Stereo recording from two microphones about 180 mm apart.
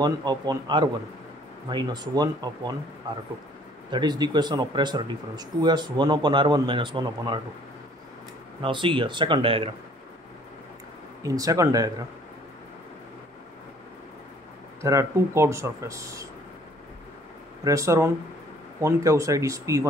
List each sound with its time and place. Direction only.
0.0 s speech: 25° right (ahead or behind)
3.9 s speech: 25° right (ahead or behind)
8.6 s speech: 25° right (ahead or behind)
11.2 s speech: 20° right (ahead or behind)
14.8 s speech: 15° right (ahead or behind)
17.6 s speech: 15° right (ahead or behind)